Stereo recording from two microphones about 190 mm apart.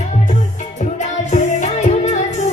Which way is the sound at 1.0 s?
40° left (ahead or behind).